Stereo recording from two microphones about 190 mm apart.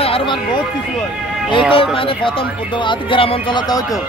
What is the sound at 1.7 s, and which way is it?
Speech, 30° left (ahead or behind).